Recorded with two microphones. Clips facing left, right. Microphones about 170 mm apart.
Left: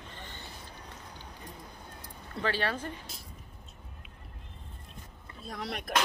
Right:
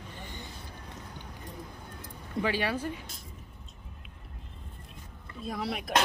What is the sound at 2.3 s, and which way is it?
Speech, 10° right (ahead or behind).